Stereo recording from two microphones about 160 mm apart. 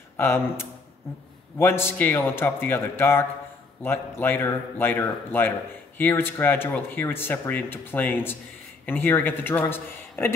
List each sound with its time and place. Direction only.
0.2 s speech: 15° left (ahead or behind)